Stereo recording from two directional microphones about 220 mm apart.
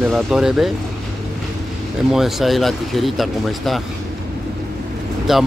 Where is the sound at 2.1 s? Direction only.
Centre (ahead or behind).